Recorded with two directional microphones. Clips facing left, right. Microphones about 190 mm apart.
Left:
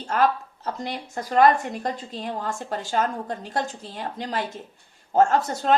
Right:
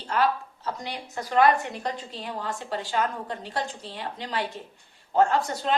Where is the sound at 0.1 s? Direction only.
45° left (ahead or behind).